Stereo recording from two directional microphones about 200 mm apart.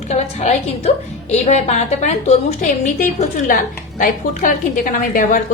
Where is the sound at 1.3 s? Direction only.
35° left (ahead or behind).